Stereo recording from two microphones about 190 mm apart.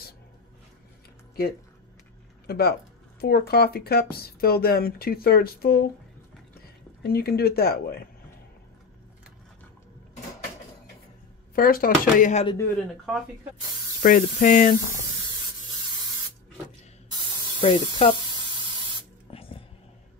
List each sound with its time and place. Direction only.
2.4 s speech: 55° left (ahead or behind)
7.0 s speech: 55° left (ahead or behind)
11.5 s speech: 50° left (ahead or behind)
14.0 s speech: 45° left (ahead or behind)
17.6 s speech: 30° left (ahead or behind)
19.3 s a sound: 30° left (ahead or behind)